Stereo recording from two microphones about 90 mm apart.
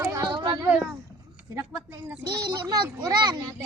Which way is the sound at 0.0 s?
35° right (ahead or behind).